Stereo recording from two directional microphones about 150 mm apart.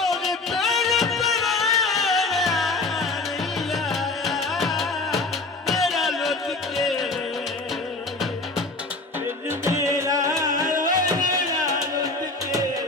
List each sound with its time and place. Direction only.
0.0 s music: centre (ahead or behind)
9.5 s music: 20° right (ahead or behind)
10.7 s music: 60° right (ahead or behind)